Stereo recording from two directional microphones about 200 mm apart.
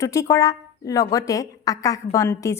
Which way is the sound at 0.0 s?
15° left (ahead or behind).